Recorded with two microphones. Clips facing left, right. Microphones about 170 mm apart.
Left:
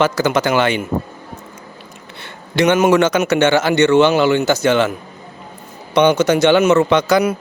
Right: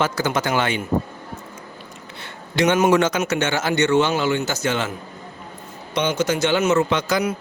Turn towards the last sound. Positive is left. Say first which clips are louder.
# left 7 dB
turn(degrees=70)  # may be behind; listen again after turning